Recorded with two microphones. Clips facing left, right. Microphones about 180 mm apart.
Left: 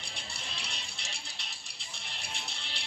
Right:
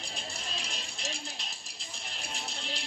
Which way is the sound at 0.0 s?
40° right (ahead or behind).